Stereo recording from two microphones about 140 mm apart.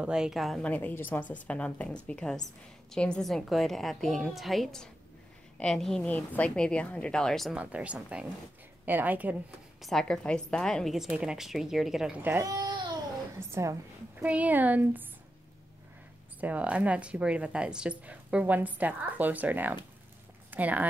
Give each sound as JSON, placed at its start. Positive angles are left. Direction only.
{"t": 0.0, "sound": "a woman's voice", "side_deg": -5}
{"t": 9.8, "sound": "a woman's voice", "side_deg": 0}
{"t": 12.4, "sound": "babbling", "side_deg": -30}
{"t": 13.4, "sound": "a woman's voice", "side_deg": -20}
{"t": 16.3, "sound": "speech", "side_deg": -10}